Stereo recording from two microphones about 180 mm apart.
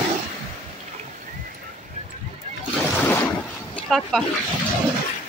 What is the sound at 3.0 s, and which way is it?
Boat, 10° left (ahead or behind).